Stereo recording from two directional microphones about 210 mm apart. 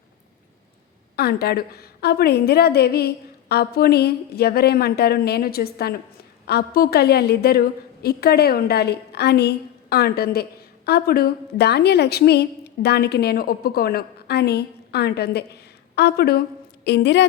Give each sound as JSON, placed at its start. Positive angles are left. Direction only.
{"t": 1.1, "sound": "a woman's voice", "side_deg": 50}